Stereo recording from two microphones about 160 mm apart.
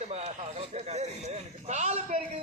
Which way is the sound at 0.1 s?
45° right (ahead or behind).